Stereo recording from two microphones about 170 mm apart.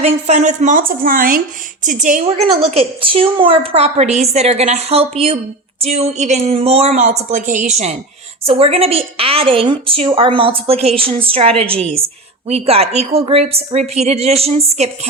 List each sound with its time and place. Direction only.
0.0 s a woman's voice: 40° right (ahead or behind)
2.6 s a woman's voice: 35° right (ahead or behind)